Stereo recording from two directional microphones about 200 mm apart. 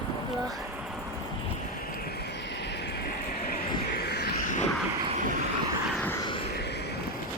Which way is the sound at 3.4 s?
50° left (ahead or behind).